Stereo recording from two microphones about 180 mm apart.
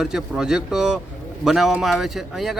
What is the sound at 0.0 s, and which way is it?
A man's voice, 5° right (ahead or behind).